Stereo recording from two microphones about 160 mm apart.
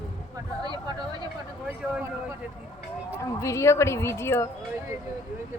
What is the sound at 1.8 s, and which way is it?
Speech, 5° right (ahead or behind).